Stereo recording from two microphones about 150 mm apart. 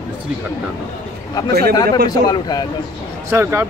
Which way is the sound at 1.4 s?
25° left (ahead or behind).